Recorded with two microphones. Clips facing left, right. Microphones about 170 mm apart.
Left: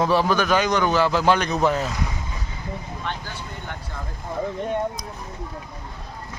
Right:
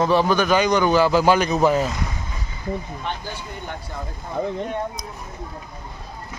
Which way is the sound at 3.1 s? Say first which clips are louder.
Right 1 dB; 15° right (ahead or behind).